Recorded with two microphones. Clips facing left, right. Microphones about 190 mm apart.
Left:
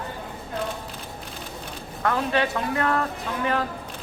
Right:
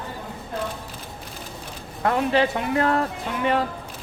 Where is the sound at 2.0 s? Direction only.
30° right (ahead or behind).